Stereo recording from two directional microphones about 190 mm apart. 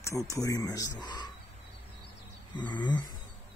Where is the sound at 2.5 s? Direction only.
20° left (ahead or behind).